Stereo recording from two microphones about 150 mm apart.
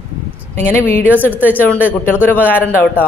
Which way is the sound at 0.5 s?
15° left (ahead or behind).